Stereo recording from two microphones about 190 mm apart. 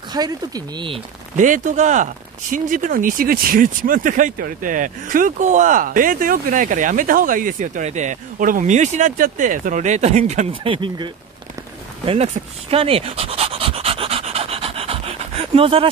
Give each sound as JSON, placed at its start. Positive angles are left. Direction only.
{"t": 0.1, "sound": "speech", "side_deg": -20}
{"t": 1.4, "sound": "speech", "side_deg": -40}
{"t": 12.1, "sound": "pant", "side_deg": -30}